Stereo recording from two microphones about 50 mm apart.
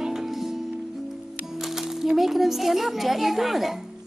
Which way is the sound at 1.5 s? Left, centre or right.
Centre.